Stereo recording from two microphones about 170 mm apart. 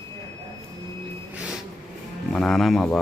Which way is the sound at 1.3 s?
5° right (ahead or behind).